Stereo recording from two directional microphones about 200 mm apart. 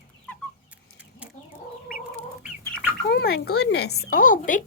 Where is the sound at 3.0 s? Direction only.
50° left (ahead or behind).